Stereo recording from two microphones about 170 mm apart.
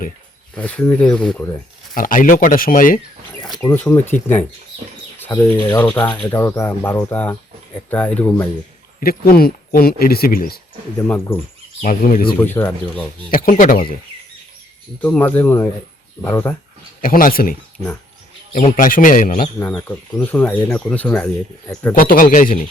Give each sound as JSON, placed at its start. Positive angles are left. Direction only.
{"t": 0.5, "sound": "speech", "side_deg": 5}
{"t": 2.0, "sound": "speech", "side_deg": 55}
{"t": 3.8, "sound": "speech", "side_deg": 10}
{"t": 9.0, "sound": "speech", "side_deg": 60}
{"t": 11.8, "sound": "speech", "side_deg": 50}
{"t": 12.4, "sound": "speech", "side_deg": 10}
{"t": 13.3, "sound": "speech", "side_deg": 55}
{"t": 15.0, "sound": "speech", "side_deg": 10}
{"t": 17.0, "sound": "speech", "side_deg": 55}
{"t": 19.5, "sound": "speech", "side_deg": 10}
{"t": 21.9, "sound": "speech", "side_deg": 55}